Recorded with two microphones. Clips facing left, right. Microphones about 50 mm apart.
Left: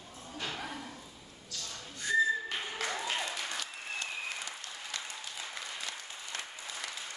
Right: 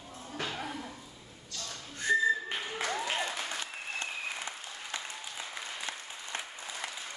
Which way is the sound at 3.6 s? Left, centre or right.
Right.